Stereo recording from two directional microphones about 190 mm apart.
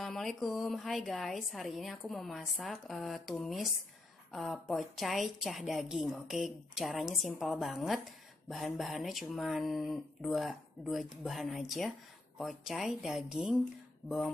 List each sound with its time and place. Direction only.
0.0 s a woman's voice: centre (ahead or behind)